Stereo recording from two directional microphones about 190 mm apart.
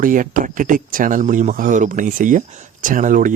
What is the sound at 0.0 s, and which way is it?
Speech, 45° right (ahead or behind).